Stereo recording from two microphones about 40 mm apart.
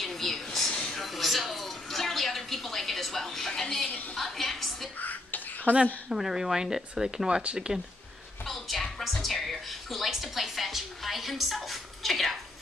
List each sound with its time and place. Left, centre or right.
0.0 s a sound: centre
1.0 s television: centre
4.2 s music: centre
5.7 s a woman's voice: left
6.0 s speech: centre
8.5 s music: centre